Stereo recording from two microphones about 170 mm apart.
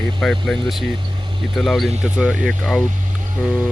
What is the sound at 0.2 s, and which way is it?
Speech, centre (ahead or behind).